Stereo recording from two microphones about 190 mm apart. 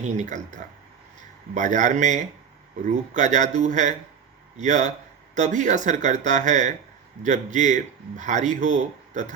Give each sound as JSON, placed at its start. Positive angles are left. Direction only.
{"t": 0.0, "sound": "speech", "side_deg": -40}